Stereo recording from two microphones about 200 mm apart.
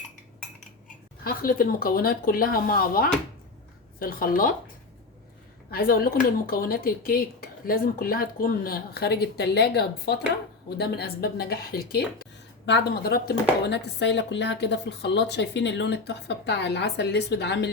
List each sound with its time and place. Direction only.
1.2 s speech: 45° left (ahead or behind)
5.7 s a woman's voice: 50° left (ahead or behind)